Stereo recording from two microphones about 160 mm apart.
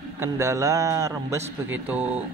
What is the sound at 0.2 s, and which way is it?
A man's voice, 15° right (ahead or behind).